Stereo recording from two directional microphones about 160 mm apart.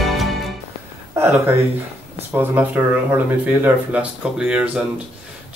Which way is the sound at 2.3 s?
10° right (ahead or behind).